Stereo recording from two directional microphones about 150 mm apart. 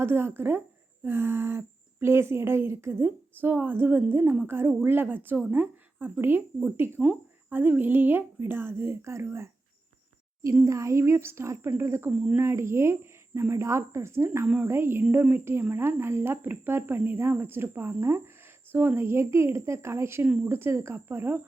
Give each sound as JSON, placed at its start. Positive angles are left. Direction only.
{"t": 0.0, "sound": "speech", "side_deg": -15}
{"t": 12.1, "sound": "speech", "side_deg": -5}
{"t": 12.4, "sound": "speech", "side_deg": -15}